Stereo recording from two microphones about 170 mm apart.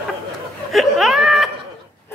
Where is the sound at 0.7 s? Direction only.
Centre (ahead or behind).